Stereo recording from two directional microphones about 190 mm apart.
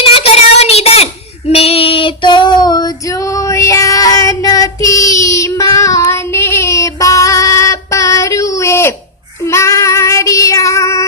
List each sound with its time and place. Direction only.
0.1 s a sound: 30° left (ahead or behind)
1.5 s female singing: 30° left (ahead or behind); by 9.0 s 15° left (ahead or behind)
9.4 s child singing: 15° left (ahead or behind)